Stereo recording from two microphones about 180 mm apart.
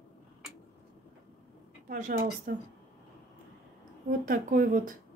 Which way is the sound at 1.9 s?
50° right (ahead or behind).